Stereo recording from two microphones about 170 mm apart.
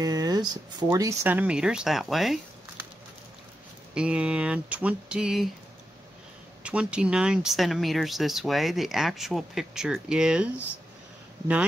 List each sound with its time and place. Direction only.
0.0 s speech: 20° right (ahead or behind); by 2.4 s centre (ahead or behind)
3.9 s speech: 5° right (ahead or behind)
6.6 s speech: 5° right (ahead or behind)